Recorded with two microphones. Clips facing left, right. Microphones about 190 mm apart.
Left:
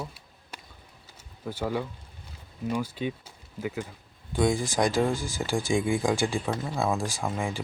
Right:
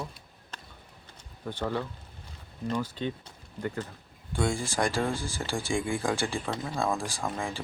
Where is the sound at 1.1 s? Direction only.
5° left (ahead or behind).